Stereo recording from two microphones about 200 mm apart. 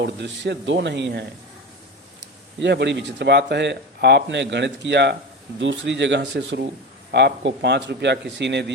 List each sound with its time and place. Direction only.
0.0 s speech: 60° right (ahead or behind)
2.6 s speech: 60° right (ahead or behind)